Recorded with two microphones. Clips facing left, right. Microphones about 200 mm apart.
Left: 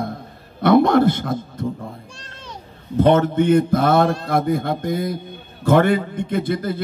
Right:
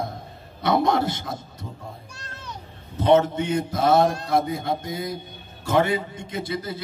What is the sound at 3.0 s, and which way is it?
A man's voice, 55° left (ahead or behind).